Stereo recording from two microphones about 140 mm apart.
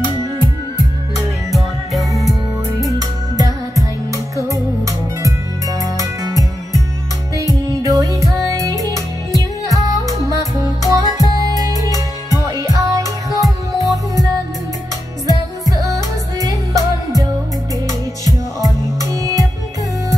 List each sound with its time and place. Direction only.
1.5 s music: centre (ahead or behind)
3.0 s music: 25° right (ahead or behind)
5.9 s music: 25° right (ahead or behind)
18.2 s music: 25° right (ahead or behind)